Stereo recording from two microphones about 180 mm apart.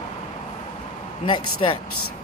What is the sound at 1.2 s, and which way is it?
Speech, 25° left (ahead or behind).